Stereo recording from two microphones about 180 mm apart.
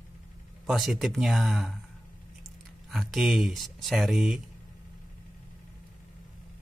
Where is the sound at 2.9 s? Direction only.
Centre (ahead or behind).